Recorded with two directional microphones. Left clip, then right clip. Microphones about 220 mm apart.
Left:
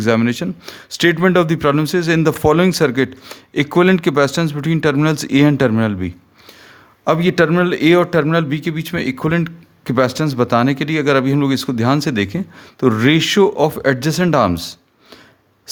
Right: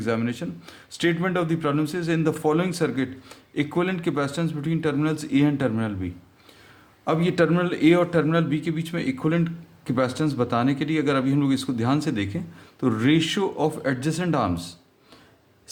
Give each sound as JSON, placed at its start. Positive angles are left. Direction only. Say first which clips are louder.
{"t": 0.0, "sound": "a man's voice", "louder": "left 10 dB", "side_deg": 45}